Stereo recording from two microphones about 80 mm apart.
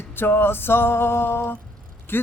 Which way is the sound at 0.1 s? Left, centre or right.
Left.